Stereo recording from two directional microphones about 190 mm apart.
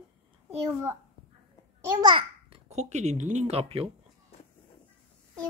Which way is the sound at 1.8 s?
25° right (ahead or behind).